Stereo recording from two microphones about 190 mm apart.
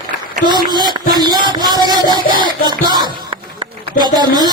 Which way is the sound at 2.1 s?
25° right (ahead or behind).